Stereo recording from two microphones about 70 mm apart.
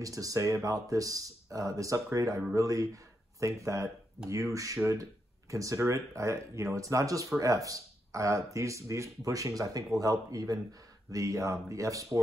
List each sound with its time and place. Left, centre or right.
0.0 s speech: right